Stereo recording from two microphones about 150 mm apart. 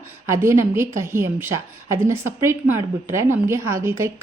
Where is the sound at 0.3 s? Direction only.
15° right (ahead or behind).